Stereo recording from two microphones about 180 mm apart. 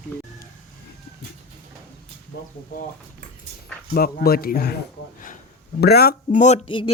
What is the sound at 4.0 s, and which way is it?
Speech, 55° left (ahead or behind).